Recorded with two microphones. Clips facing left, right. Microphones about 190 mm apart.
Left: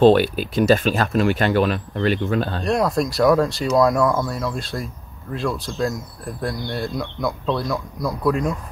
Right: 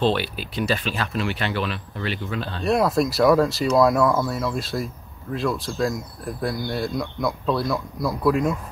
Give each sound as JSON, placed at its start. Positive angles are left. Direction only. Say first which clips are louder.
{"t": 0.0, "sound": "speech", "louder": "left 9 dB", "side_deg": 45}
{"t": 2.6, "sound": "speech", "louder": "right 4 dB", "side_deg": 0}